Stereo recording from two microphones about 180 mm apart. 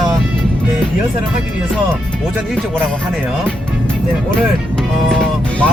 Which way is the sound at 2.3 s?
Centre (ahead or behind).